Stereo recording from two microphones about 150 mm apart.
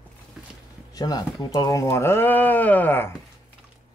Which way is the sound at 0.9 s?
25° left (ahead or behind).